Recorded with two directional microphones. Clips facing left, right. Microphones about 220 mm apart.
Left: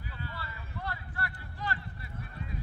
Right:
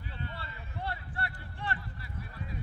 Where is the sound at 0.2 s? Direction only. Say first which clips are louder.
Even; 25° right (ahead or behind).